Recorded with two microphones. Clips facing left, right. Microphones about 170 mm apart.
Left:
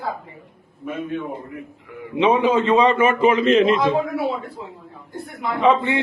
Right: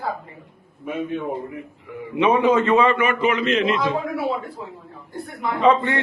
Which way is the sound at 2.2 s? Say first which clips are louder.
Even; 10° left (ahead or behind).